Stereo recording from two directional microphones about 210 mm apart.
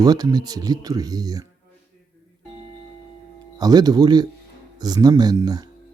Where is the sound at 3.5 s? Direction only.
20° right (ahead or behind).